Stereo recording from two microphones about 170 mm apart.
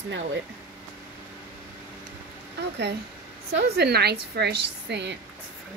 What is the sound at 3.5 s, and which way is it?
Speech, 75° right (ahead or behind).